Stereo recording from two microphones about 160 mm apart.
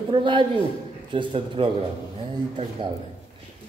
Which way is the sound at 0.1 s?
30° right (ahead or behind).